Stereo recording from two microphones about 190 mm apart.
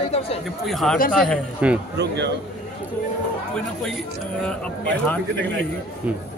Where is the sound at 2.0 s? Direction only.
65° right (ahead or behind).